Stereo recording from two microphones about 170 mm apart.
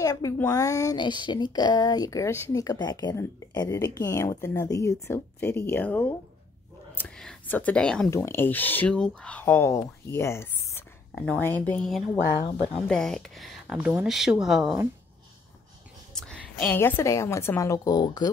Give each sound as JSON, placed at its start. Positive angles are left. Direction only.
{"t": 0.0, "sound": "speech", "side_deg": 20}
{"t": 16.2, "sound": "a woman's voice", "side_deg": 5}